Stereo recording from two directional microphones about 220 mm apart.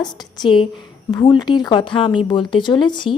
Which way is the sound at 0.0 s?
20° left (ahead or behind).